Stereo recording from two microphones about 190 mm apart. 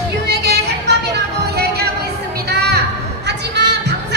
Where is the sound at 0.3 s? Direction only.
60° right (ahead or behind).